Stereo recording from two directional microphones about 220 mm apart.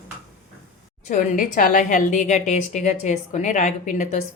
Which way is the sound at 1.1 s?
35° left (ahead or behind).